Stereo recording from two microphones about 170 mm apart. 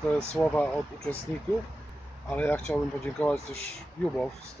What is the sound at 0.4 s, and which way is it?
Speech, 10° left (ahead or behind).